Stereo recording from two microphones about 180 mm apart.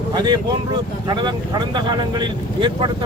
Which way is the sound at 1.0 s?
25° right (ahead or behind).